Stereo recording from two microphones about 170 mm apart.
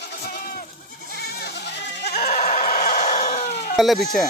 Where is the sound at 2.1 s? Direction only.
65° left (ahead or behind).